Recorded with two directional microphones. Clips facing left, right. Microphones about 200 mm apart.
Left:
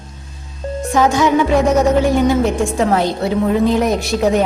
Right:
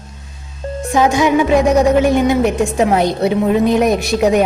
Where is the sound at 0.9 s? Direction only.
15° right (ahead or behind).